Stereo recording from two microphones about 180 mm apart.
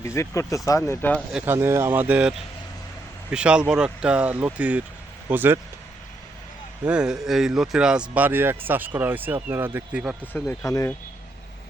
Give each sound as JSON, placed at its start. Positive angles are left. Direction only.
{"t": 0.0, "sound": "speech", "side_deg": 15}
{"t": 1.3, "sound": "speech", "side_deg": -5}
{"t": 6.8, "sound": "speech", "side_deg": -5}
{"t": 10.7, "sound": "speech", "side_deg": 20}